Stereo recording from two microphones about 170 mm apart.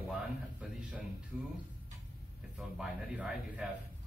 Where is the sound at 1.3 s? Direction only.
5° right (ahead or behind).